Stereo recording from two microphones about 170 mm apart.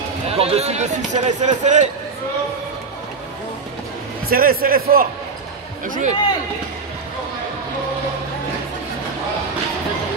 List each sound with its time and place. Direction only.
0.3 s speech: 35° right (ahead or behind)
4.3 s speech: 60° right (ahead or behind)
5.9 s speech: 45° right (ahead or behind)